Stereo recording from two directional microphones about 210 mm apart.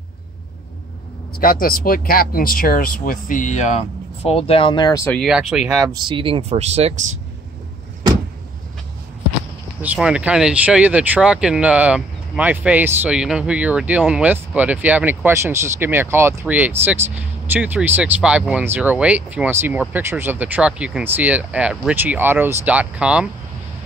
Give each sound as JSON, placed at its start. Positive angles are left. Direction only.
{"t": 1.4, "sound": "speech", "side_deg": 45}
{"t": 5.2, "sound": "speech", "side_deg": 0}
{"t": 6.0, "sound": "speech", "side_deg": -25}
{"t": 9.8, "sound": "speech", "side_deg": -5}